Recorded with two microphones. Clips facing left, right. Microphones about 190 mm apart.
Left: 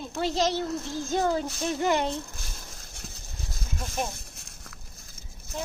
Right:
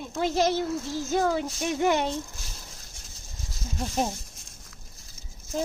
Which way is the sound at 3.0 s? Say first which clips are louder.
Left 6 dB; 65° left (ahead or behind).